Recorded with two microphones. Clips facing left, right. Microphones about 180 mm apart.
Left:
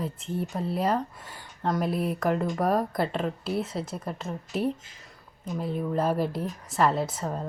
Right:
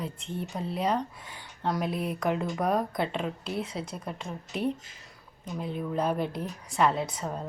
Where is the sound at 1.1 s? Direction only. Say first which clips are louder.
Left 1 dB; 45° left (ahead or behind).